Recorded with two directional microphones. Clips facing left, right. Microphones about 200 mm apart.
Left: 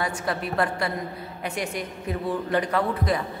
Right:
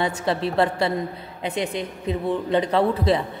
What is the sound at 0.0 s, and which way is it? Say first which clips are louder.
A man's voice: right 5 dB; 25° right (ahead or behind).